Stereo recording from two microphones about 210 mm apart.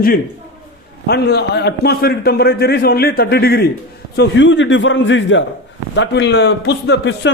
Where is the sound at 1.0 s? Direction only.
50° left (ahead or behind).